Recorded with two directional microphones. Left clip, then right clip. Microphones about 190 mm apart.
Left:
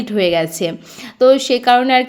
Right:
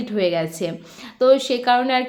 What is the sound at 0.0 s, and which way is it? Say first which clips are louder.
A woman's voice: left 5 dB; 30° left (ahead or behind).